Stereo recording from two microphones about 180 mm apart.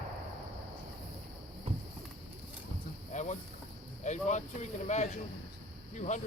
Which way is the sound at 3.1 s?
40° left (ahead or behind).